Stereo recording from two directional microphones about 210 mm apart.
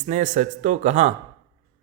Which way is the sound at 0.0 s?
35° right (ahead or behind).